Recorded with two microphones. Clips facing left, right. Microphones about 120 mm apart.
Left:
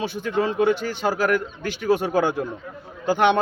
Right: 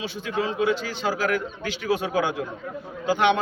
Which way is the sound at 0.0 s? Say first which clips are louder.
Left 4 dB; 50° left (ahead or behind).